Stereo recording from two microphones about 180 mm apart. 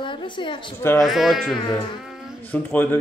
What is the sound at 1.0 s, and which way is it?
Speech, centre (ahead or behind).